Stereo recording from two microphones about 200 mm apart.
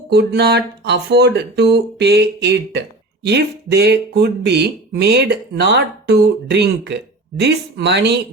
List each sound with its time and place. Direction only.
0.1 s speech: 55° right (ahead or behind)